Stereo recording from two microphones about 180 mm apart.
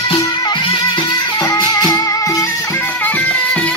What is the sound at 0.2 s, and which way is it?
Music, 20° left (ahead or behind).